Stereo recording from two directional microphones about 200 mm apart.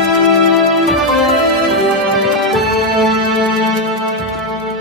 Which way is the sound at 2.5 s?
Centre (ahead or behind).